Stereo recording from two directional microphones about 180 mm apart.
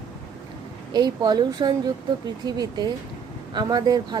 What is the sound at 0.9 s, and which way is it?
Speech, 25° right (ahead or behind).